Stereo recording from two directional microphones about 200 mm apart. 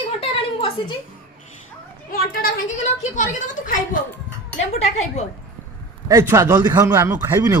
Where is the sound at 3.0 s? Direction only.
40° left (ahead or behind).